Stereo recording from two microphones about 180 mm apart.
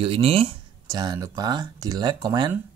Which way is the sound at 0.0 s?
30° right (ahead or behind).